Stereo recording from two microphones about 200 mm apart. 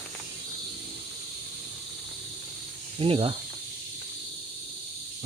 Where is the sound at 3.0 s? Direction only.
25° right (ahead or behind).